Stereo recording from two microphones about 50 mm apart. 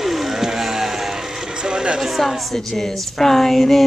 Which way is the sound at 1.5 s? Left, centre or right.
Centre.